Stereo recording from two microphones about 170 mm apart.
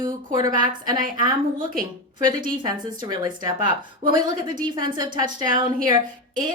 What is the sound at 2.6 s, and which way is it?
A woman's voice, 25° right (ahead or behind).